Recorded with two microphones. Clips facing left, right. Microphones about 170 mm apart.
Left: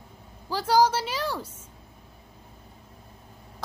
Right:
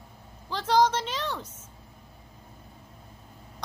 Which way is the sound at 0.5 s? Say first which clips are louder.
Left 2 dB; 10° left (ahead or behind).